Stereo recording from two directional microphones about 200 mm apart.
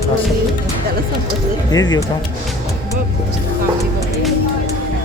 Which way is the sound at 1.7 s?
20° left (ahead or behind).